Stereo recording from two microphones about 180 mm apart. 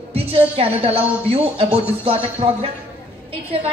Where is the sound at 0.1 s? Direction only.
30° right (ahead or behind).